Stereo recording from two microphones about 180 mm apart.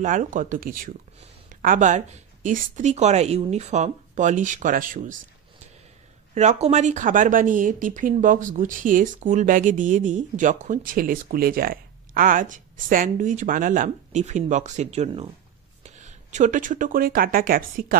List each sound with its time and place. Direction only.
0.0 s speech: 45° right (ahead or behind)
6.3 s speech: 40° right (ahead or behind)